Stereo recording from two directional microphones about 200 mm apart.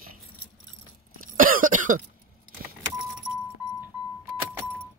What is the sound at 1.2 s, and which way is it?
Cough, 45° right (ahead or behind).